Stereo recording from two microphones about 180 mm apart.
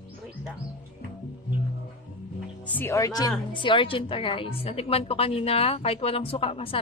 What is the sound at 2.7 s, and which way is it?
A woman's voice, 10° left (ahead or behind).